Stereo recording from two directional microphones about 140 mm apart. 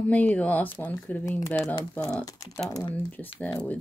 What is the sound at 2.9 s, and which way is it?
Speech, 15° left (ahead or behind).